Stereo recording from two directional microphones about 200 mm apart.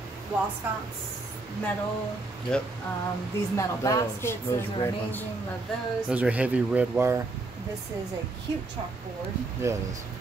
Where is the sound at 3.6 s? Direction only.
15° left (ahead or behind).